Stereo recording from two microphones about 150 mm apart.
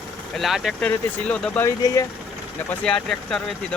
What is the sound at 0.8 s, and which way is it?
Speech, 10° left (ahead or behind).